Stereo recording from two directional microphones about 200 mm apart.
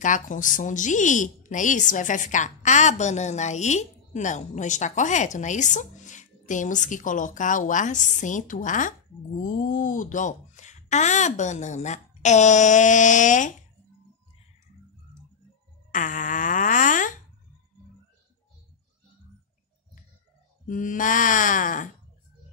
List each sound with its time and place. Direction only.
0.0 s a woman's voice: 40° left (ahead or behind)
15.9 s fart: 40° left (ahead or behind)
20.6 s a woman's voice: 40° left (ahead or behind)